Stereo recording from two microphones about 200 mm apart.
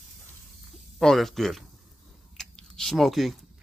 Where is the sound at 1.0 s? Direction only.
Centre (ahead or behind).